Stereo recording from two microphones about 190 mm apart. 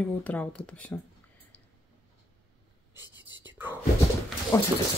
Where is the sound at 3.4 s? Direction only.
10° right (ahead or behind).